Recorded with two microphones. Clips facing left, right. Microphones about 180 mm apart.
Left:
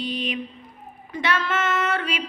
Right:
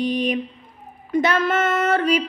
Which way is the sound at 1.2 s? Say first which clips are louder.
Right 3 dB; 45° right (ahead or behind).